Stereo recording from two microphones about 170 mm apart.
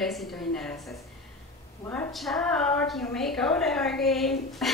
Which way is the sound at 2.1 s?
Centre (ahead or behind).